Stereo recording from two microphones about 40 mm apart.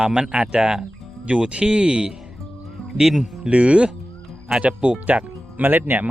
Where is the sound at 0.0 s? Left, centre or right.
Right.